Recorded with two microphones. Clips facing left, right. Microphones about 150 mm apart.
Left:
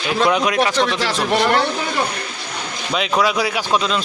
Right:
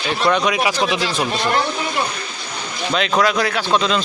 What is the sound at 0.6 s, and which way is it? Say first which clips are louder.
Speech: left 2 dB; 10° right (ahead or behind).